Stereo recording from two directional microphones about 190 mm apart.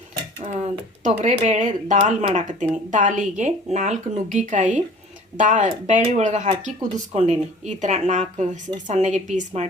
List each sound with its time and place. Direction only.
0.4 s speech: 40° right (ahead or behind)